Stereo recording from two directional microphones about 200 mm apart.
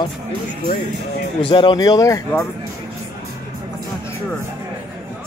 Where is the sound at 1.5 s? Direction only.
25° left (ahead or behind).